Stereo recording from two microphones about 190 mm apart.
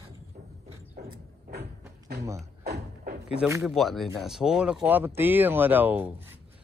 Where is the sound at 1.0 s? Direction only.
60° right (ahead or behind).